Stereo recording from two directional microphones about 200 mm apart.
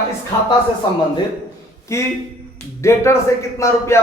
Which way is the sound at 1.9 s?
15° left (ahead or behind).